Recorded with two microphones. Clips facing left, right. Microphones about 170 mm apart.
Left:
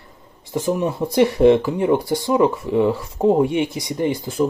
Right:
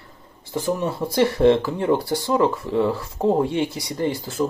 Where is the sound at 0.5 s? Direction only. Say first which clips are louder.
Left 3 dB; 15° left (ahead or behind).